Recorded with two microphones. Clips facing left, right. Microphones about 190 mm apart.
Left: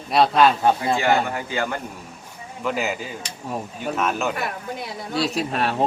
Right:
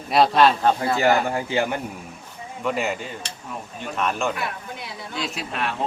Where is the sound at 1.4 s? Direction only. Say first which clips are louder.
Right 2 dB; 25° right (ahead or behind).